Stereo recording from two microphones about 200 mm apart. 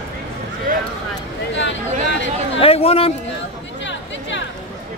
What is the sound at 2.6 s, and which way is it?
Speech, 30° left (ahead or behind).